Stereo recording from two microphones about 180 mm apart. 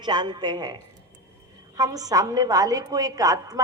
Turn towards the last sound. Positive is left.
turn(degrees=-20)  # may be behind; listen again after turning